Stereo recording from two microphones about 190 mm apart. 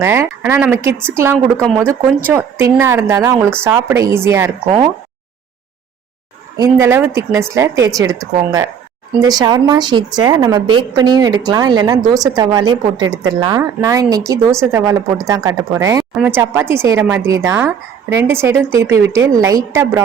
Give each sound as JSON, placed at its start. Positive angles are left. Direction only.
{"t": 0.0, "sound": "a woman's voice", "side_deg": -15}
{"t": 6.6, "sound": "a woman's voice", "side_deg": -15}